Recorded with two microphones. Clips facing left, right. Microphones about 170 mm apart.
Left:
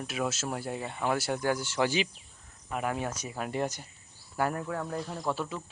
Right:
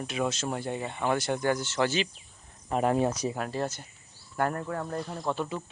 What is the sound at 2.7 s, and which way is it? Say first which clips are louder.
Speech: right 7 dB; 30° right (ahead or behind).